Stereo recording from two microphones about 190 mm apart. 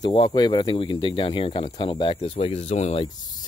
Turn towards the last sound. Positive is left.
turn(degrees=35)  # may be behind; listen again after turning